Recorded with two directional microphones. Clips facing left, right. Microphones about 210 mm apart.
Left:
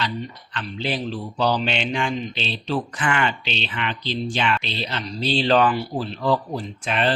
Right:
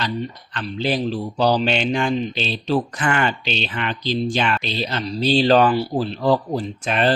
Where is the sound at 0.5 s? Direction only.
40° right (ahead or behind).